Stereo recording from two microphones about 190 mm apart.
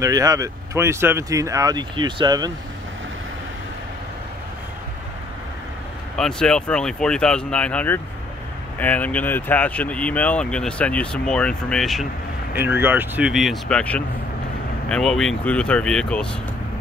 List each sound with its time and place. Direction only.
0.0 s speech: 20° right (ahead or behind)
6.1 s speech: 5° left (ahead or behind)
12.5 s speech: 10° right (ahead or behind)